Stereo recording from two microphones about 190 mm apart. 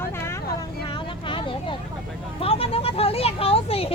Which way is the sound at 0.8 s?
25° left (ahead or behind).